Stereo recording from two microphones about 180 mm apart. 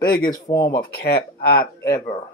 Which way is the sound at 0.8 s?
55° left (ahead or behind).